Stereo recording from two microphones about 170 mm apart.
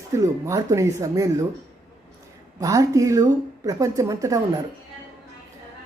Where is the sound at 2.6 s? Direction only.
20° right (ahead or behind).